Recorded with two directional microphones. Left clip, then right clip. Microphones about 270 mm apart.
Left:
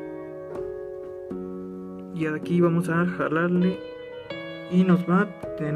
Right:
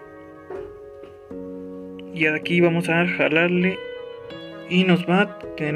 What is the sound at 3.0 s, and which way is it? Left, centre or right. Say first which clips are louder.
Speech: right 7 dB; left.